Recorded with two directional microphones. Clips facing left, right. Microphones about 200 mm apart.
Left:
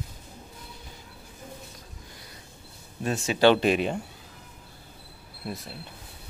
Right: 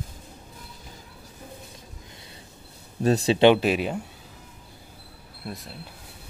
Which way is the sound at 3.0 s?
35° right (ahead or behind).